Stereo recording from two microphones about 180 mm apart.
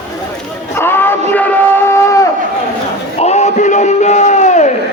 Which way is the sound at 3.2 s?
40° left (ahead or behind).